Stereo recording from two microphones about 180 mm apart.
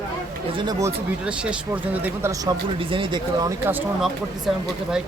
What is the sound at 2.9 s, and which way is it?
Speech, 25° right (ahead or behind).